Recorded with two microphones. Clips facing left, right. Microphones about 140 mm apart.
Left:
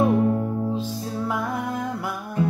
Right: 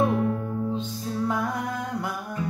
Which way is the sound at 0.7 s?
5° left (ahead or behind).